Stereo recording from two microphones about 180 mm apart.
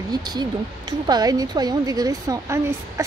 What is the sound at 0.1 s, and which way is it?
A woman's voice, 25° right (ahead or behind).